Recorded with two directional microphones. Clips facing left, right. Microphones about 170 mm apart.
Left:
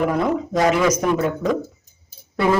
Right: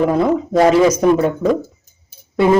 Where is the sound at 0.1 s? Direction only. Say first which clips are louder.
Right 5 dB; 30° right (ahead or behind).